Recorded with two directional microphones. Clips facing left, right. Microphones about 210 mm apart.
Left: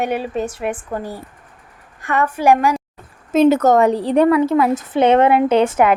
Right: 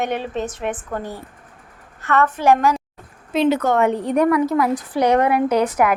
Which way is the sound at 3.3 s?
45° left (ahead or behind).